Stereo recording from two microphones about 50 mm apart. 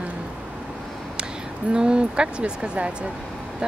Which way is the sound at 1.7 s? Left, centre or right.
Centre.